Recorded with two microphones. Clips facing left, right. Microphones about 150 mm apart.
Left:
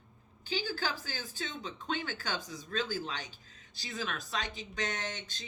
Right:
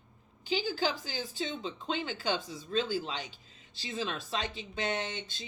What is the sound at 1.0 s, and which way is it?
A woman's voice, 20° right (ahead or behind).